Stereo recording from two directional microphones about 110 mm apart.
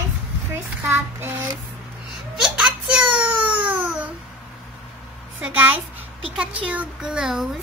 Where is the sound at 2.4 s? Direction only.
5° right (ahead or behind).